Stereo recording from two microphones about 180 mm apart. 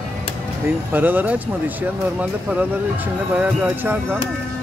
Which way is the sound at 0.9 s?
10° right (ahead or behind).